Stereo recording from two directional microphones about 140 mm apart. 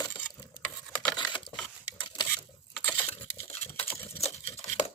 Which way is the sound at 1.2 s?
35° left (ahead or behind).